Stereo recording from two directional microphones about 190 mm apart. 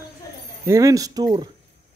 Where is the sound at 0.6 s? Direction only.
15° right (ahead or behind).